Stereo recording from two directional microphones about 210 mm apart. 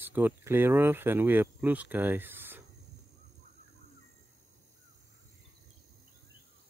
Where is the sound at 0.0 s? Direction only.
10° right (ahead or behind).